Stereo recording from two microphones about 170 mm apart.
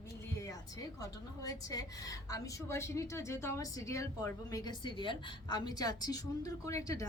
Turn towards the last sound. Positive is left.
turn(degrees=20)  # may be behind; listen again after turning